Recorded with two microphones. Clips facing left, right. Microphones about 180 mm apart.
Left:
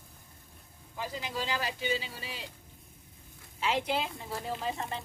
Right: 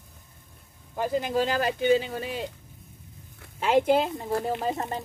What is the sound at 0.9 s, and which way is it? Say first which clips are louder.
Speech: right 11 dB; 50° right (ahead or behind).